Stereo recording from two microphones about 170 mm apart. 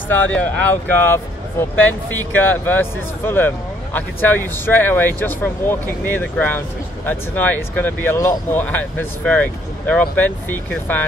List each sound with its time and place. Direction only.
0.1 s speech: 10° left (ahead or behind)